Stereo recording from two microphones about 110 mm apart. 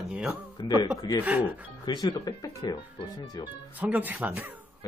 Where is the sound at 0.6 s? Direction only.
40° left (ahead or behind).